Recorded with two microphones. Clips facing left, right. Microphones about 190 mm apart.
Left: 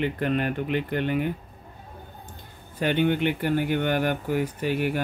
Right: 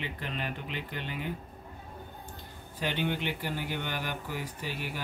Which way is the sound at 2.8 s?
55° left (ahead or behind).